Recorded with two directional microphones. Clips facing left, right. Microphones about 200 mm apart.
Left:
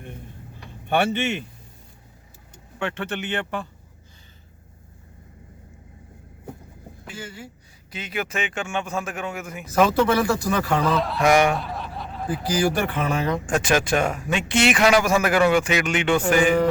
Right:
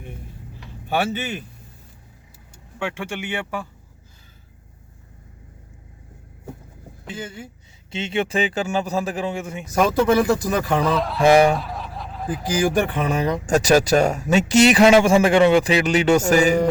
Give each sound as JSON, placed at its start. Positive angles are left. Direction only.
{"t": 0.9, "sound": "speech", "side_deg": -5}
{"t": 2.7, "sound": "speech", "side_deg": -10}
{"t": 7.9, "sound": "speech", "side_deg": -25}
{"t": 9.9, "sound": "speech", "side_deg": -15}
{"t": 10.8, "sound": "speech", "side_deg": 0}
{"t": 11.2, "sound": "speech", "side_deg": -30}
{"t": 11.5, "sound": "snicker", "side_deg": 0}
{"t": 12.4, "sound": "speech", "side_deg": -15}
{"t": 13.4, "sound": "speech", "side_deg": -40}